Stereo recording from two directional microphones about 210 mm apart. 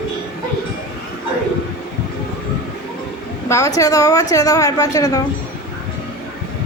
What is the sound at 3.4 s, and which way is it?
A woman's voice, 15° left (ahead or behind).